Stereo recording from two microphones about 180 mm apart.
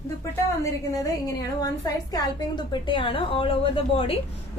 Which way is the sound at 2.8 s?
25° left (ahead or behind).